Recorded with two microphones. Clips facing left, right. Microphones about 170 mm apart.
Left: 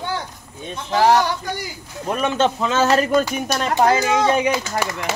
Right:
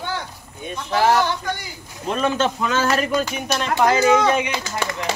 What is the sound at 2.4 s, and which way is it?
Speech, 25° left (ahead or behind).